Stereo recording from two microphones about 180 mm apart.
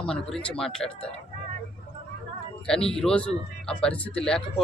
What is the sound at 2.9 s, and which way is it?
Speech, 5° left (ahead or behind).